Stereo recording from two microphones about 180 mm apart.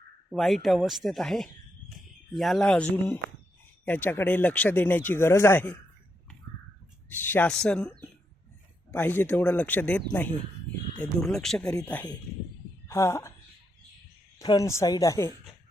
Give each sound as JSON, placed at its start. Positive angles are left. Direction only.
{"t": 0.3, "sound": "speech", "side_deg": 0}
{"t": 7.1, "sound": "a woman's voice", "side_deg": 10}
{"t": 14.3, "sound": "speech", "side_deg": 20}